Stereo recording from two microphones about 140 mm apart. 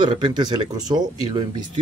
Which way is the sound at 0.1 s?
30° right (ahead or behind).